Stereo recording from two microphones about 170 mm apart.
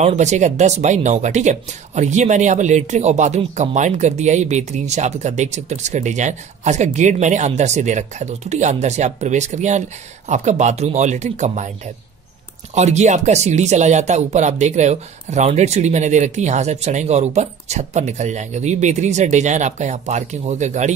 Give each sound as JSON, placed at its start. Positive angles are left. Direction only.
{"t": 0.0, "sound": "speech", "side_deg": -40}